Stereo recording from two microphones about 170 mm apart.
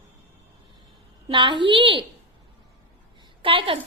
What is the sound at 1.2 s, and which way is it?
Speech, 30° right (ahead or behind).